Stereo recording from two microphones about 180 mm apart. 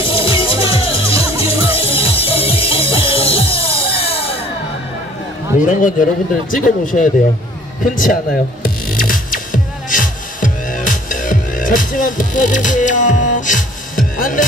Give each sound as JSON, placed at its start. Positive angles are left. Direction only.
{"t": 0.0, "sound": "music", "side_deg": 30}
{"t": 5.7, "sound": "speech", "side_deg": 45}
{"t": 8.6, "sound": "music", "side_deg": 50}